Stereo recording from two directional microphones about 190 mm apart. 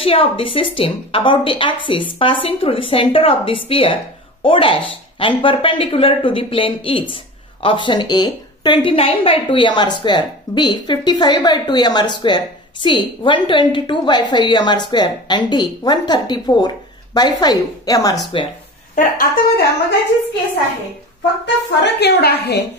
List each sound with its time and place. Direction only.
0.0 s a woman's voice: 30° left (ahead or behind)
18.9 s speech: 50° left (ahead or behind)
21.8 s a woman's voice: 60° left (ahead or behind)